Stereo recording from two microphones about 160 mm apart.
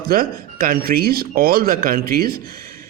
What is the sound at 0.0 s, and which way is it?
Speech, 65° right (ahead or behind).